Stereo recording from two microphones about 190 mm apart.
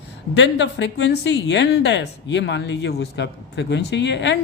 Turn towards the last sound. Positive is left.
turn(degrees=70)  # may be behind; listen again after turning